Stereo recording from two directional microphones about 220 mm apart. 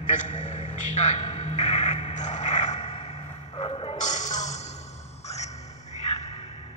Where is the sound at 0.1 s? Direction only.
35° left (ahead or behind).